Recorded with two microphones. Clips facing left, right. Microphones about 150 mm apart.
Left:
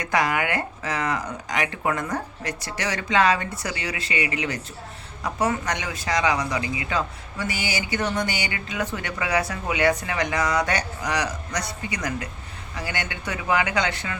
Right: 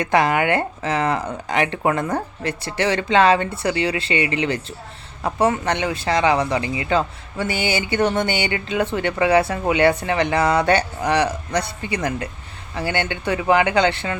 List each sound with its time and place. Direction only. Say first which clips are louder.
0.0 s speech: right 6 dB; 25° right (ahead or behind)